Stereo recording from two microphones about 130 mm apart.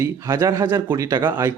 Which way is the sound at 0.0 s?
25° right (ahead or behind).